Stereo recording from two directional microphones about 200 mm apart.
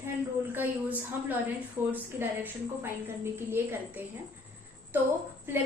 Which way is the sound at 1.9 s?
10° right (ahead or behind).